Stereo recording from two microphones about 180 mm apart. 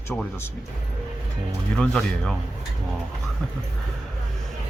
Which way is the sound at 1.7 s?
5° left (ahead or behind).